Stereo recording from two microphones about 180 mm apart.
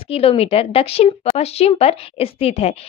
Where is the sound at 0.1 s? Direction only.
35° left (ahead or behind).